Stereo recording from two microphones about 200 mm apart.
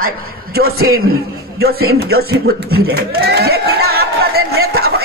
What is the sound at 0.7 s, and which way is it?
Speech, 90° right.